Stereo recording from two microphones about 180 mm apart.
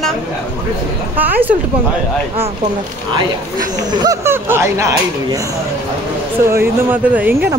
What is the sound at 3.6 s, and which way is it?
Speech, 20° right (ahead or behind).